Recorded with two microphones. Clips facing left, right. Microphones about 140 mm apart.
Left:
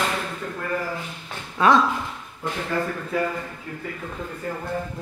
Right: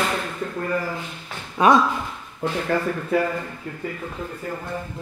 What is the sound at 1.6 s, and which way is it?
Speech, 15° right (ahead or behind).